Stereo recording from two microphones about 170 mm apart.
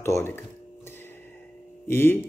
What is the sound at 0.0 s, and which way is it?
Speech, 15° left (ahead or behind).